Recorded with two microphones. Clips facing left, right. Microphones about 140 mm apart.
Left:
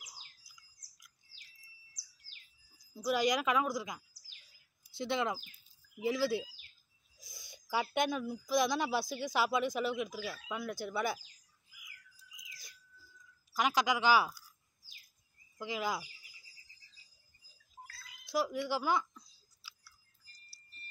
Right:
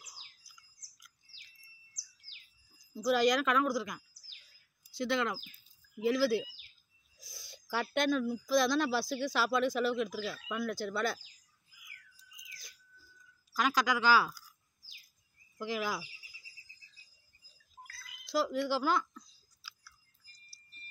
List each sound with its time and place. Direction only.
2.9 s speech: 15° left (ahead or behind)
13.5 s speech: 20° left (ahead or behind)
15.6 s speech: 15° left (ahead or behind)
17.8 s a sound: 20° left (ahead or behind)